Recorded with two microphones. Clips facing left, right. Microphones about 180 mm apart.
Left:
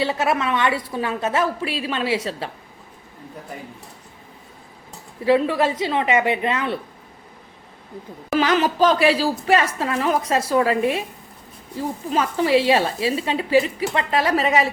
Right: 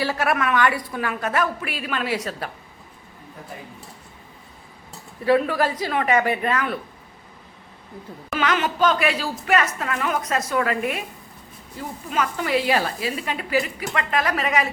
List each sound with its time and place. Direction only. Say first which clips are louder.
0.0 s speech: left 1 dB; 20° left (ahead or behind)
5.2 s speech: left 2 dB; 25° left (ahead or behind)
8.4 s speech: left 4 dB; 35° left (ahead or behind)